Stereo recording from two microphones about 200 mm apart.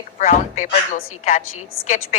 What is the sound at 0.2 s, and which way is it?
A woman's voice, 40° left (ahead or behind).